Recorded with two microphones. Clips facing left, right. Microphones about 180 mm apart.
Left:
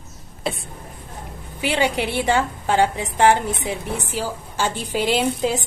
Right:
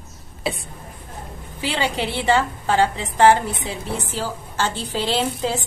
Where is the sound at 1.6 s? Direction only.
15° left (ahead or behind).